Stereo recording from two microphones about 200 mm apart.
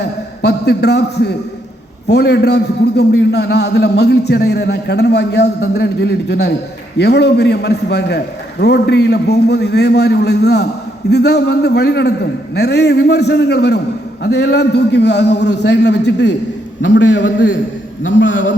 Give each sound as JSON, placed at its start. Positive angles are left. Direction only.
{"t": 0.0, "sound": "a man's voice", "side_deg": 55}